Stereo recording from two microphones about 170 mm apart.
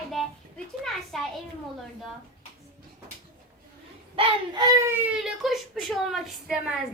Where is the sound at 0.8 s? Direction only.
Centre (ahead or behind).